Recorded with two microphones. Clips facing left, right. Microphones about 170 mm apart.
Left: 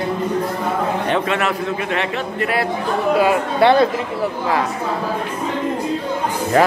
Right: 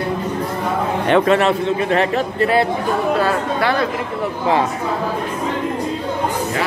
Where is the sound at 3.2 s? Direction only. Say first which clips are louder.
Left 3 dB; 20° left (ahead or behind).